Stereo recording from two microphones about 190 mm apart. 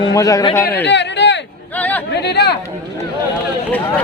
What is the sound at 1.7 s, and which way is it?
Chatter, 10° left (ahead or behind).